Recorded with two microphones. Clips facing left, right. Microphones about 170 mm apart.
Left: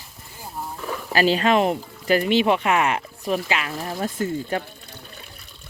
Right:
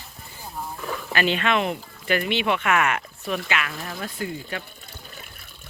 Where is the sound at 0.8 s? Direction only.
5° left (ahead or behind).